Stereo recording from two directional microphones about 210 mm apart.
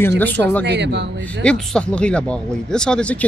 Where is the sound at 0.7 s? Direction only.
55° right (ahead or behind).